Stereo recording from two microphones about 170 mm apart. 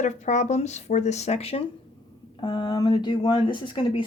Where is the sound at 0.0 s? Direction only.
45° left (ahead or behind).